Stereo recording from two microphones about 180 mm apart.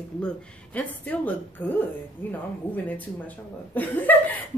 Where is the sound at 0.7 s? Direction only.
10° left (ahead or behind).